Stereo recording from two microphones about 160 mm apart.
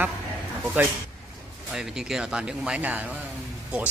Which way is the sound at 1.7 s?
5° right (ahead or behind).